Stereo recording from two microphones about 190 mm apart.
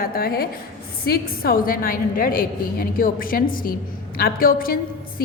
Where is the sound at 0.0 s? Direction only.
50° left (ahead or behind).